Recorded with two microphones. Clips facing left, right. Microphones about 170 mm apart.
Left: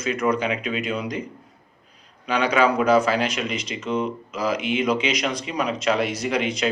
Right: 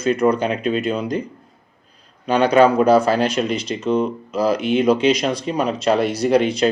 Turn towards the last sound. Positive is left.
turn(degrees=-35)  # may be behind; listen again after turning